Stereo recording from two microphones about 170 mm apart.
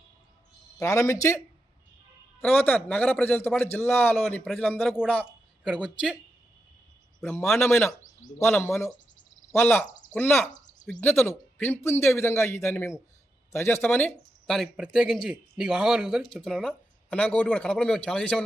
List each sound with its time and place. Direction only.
0.8 s speech: 20° left (ahead or behind)
2.4 s a man's voice: 10° left (ahead or behind); by 5.9 s 5° right (ahead or behind)
7.2 s a man's voice: 10° left (ahead or behind)